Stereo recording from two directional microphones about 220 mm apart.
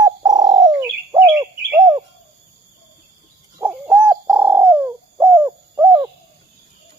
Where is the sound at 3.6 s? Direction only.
10° right (ahead or behind).